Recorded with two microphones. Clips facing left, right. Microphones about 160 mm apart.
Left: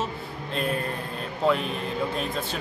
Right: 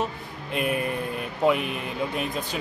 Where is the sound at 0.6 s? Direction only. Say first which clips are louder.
Right 2 dB; 10° right (ahead or behind).